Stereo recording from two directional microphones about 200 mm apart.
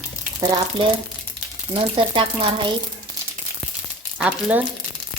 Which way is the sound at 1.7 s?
25° right (ahead or behind).